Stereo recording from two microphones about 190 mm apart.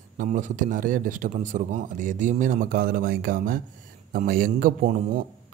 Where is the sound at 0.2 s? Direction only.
40° right (ahead or behind).